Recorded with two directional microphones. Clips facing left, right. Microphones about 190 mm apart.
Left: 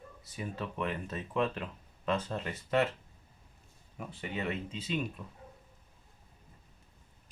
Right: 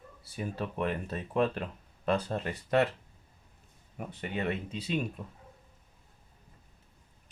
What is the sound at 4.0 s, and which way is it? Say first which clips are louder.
Speech: right 3 dB; 55° right (ahead or behind).